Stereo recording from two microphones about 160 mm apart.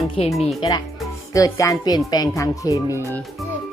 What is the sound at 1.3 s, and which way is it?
Music, 20° left (ahead or behind).